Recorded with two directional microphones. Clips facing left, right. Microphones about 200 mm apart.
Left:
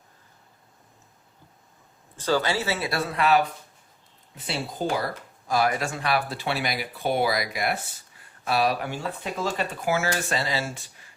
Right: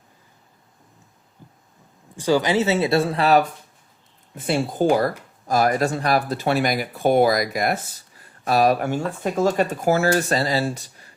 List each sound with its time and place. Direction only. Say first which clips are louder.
2.1 s speech: right 6 dB; 15° right (ahead or behind); by 3.4 s 35° right (ahead or behind)
4.4 s speech: right 9 dB; 50° right (ahead or behind)